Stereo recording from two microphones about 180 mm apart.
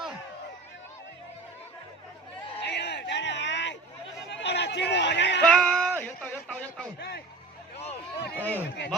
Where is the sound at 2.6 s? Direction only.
70° left (ahead or behind).